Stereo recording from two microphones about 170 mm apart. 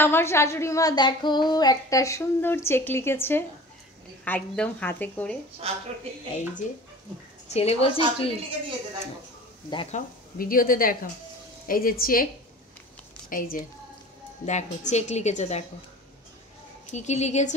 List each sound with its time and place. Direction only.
0.0 s a woman's voice: 15° left (ahead or behind)
5.6 s a woman's voice: 35° right (ahead or behind)
7.4 s a woman's voice: 40° left (ahead or behind)
8.0 s a woman's voice: 30° right (ahead or behind)
9.8 s speech: 50° left (ahead or behind)
13.3 s speech: 55° left (ahead or behind)
14.4 s a woman's voice: 45° left (ahead or behind)
16.9 s a woman's voice: 40° left (ahead or behind)